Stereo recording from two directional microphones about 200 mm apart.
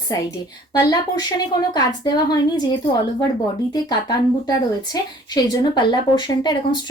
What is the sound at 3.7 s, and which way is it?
A woman's voice, 20° left (ahead or behind).